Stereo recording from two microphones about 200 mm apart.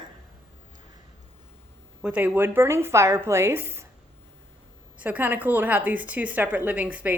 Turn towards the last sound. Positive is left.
turn(degrees=-10)  # may be behind; listen again after turning